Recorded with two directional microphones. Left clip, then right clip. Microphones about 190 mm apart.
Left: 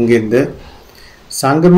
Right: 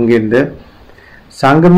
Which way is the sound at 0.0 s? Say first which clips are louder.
Right 1 dB; 35° left (ahead or behind).